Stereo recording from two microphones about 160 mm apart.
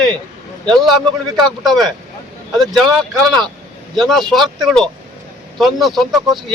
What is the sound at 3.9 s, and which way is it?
A man's voice, centre (ahead or behind).